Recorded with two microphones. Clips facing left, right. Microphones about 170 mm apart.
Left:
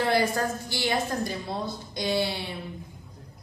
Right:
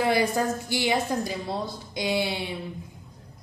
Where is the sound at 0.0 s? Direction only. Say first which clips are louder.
Right 1 dB; 15° right (ahead or behind).